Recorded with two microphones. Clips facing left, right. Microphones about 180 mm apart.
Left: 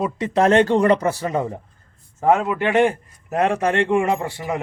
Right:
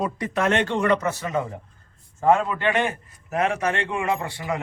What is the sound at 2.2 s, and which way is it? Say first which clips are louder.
Speech: left 2 dB; 15° left (ahead or behind).